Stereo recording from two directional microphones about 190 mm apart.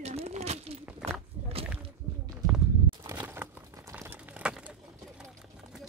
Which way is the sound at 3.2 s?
10° right (ahead or behind).